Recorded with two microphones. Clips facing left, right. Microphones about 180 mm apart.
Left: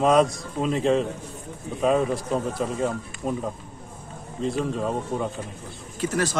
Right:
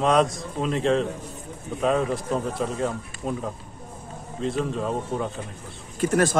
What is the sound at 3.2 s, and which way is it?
A man's voice, 5° left (ahead or behind).